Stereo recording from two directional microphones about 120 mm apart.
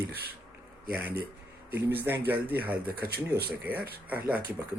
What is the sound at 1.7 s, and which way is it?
Speech, 15° right (ahead or behind).